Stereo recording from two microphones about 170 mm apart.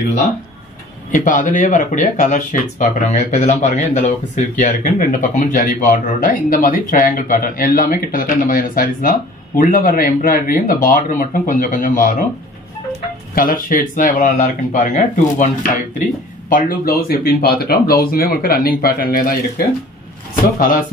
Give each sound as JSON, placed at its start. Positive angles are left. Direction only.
{"t": 1.1, "sound": "speech", "side_deg": 50}
{"t": 13.3, "sound": "speech", "side_deg": 60}
{"t": 20.5, "sound": "speech", "side_deg": 55}